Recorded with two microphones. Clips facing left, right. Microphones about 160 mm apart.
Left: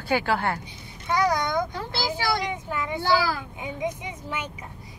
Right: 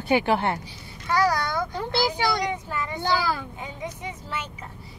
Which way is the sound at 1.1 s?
20° left (ahead or behind).